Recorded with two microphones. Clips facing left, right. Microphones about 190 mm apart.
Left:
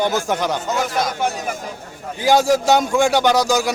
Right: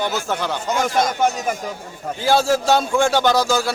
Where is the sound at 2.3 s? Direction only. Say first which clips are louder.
Left 2 dB; 15° left (ahead or behind).